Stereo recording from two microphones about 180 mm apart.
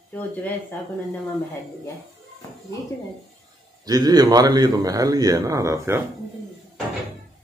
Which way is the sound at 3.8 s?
20° right (ahead or behind).